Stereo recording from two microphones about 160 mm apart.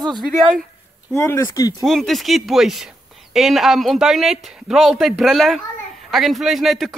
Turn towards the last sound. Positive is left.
turn(degrees=0)  # may be behind; listen again after turning